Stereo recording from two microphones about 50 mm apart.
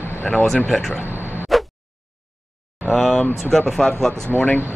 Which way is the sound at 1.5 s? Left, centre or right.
Centre.